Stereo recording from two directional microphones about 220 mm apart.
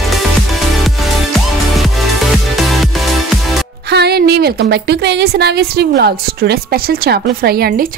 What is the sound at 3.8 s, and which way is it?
A woman's voice, 50° right (ahead or behind).